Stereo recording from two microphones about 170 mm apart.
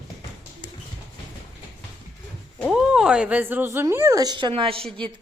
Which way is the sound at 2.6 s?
5° right (ahead or behind).